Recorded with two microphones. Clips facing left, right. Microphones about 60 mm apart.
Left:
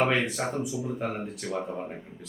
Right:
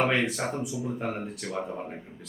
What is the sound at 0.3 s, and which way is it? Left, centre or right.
Speech, centre.